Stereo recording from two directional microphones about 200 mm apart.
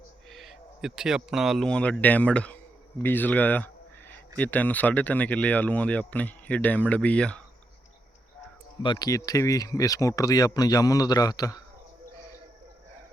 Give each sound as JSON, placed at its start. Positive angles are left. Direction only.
{"t": 0.3, "sound": "speech", "side_deg": 0}
{"t": 8.8, "sound": "speech", "side_deg": 20}